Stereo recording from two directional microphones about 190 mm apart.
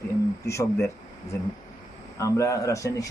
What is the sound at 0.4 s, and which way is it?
Speech, 15° left (ahead or behind).